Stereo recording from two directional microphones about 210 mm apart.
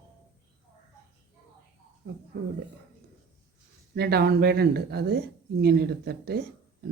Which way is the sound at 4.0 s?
50° right (ahead or behind).